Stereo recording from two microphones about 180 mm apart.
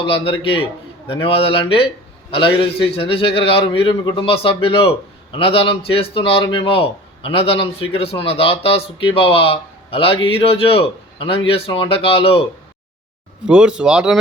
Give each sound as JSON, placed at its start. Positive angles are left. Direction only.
{"t": 0.0, "sound": "a man's voice", "side_deg": 30}
{"t": 13.4, "sound": "speech", "side_deg": -5}